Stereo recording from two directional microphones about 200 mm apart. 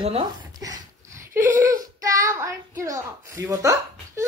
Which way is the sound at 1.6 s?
15° right (ahead or behind).